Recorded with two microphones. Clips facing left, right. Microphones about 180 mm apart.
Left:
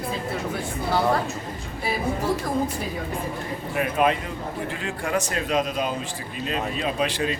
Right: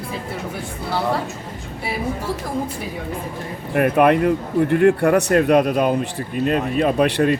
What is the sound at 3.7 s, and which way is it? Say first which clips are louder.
Speech: right 8 dB; 60° right (ahead or behind).